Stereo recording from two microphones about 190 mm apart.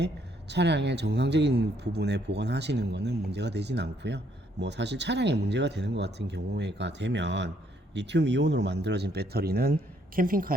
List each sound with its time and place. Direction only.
0.0 s a woman's voice: 65° right (ahead or behind); by 10.5 s 50° right (ahead or behind)